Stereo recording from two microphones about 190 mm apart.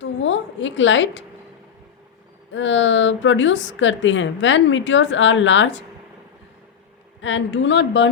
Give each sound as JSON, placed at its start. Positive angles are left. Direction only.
{"t": 0.0, "sound": "a woman's voice", "side_deg": 80}
{"t": 2.5, "sound": "a woman's voice", "side_deg": 75}
{"t": 7.2, "sound": "a woman's voice", "side_deg": 80}